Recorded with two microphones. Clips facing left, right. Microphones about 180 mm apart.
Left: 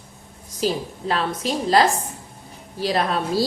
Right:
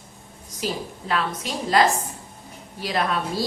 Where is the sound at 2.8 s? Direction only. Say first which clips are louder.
Left 3 dB; 35° left (ahead or behind).